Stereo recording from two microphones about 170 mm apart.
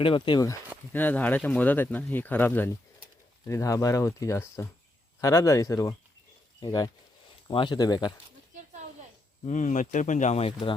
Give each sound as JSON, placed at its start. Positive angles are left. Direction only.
{"t": 0.0, "sound": "speech", "side_deg": 30}
{"t": 0.9, "sound": "speech", "side_deg": 10}
{"t": 9.5, "sound": "speech", "side_deg": 45}